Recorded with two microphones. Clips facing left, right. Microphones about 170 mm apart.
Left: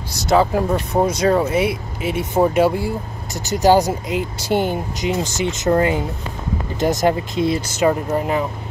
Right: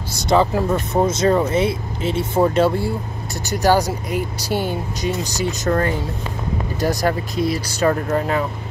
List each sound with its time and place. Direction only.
0.2 s speech: 5° left (ahead or behind); by 7.9 s 25° left (ahead or behind)
7.9 s speech: 15° left (ahead or behind)